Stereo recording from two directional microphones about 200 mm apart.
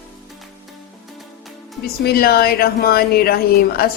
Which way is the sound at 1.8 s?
50° left (ahead or behind).